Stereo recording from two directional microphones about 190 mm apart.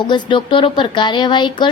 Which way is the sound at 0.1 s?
25° left (ahead or behind).